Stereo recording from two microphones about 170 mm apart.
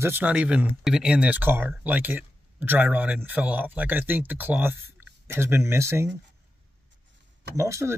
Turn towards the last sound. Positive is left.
turn(degrees=-15)  # may be behind; listen again after turning